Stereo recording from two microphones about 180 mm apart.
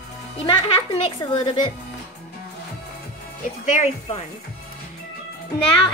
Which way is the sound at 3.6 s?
40° left (ahead or behind).